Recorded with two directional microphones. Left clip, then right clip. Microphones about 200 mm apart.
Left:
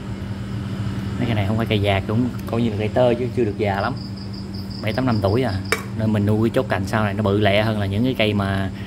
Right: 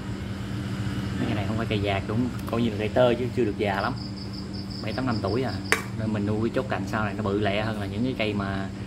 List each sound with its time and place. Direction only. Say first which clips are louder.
1.6 s speech: left 7 dB; 30° left (ahead or behind)
2.5 s speech: left 3 dB; 15° left (ahead or behind)
4.8 s speech: left 7 dB; 35° left (ahead or behind)